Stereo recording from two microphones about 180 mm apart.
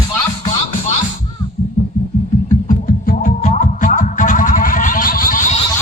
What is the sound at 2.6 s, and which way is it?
Music, 45° left (ahead or behind).